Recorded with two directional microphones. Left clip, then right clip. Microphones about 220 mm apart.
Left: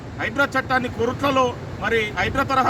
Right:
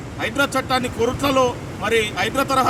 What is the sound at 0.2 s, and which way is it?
Speech, centre (ahead or behind).